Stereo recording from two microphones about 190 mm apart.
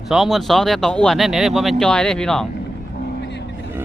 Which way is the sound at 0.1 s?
Centre (ahead or behind).